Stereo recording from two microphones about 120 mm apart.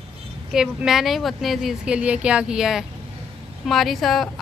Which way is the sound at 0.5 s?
5° right (ahead or behind).